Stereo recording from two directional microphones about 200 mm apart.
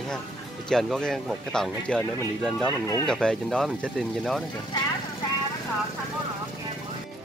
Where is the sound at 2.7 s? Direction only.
15° left (ahead or behind).